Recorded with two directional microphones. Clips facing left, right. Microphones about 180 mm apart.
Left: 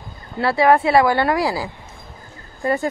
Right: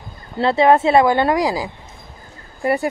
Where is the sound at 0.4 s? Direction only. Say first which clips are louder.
Right 2 dB; 20° right (ahead or behind).